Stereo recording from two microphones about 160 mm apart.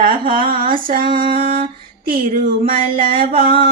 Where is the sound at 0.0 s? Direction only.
60° right (ahead or behind).